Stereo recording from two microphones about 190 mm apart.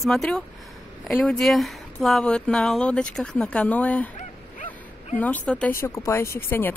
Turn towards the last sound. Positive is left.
turn(degrees=10)  # may be behind; listen again after turning